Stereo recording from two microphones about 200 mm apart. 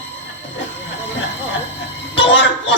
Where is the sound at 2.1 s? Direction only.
65° left (ahead or behind).